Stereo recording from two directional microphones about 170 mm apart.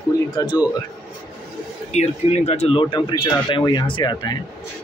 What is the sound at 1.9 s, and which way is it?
Speech, 40° left (ahead or behind).